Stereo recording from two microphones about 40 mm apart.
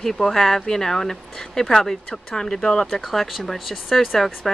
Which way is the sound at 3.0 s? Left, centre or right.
Centre.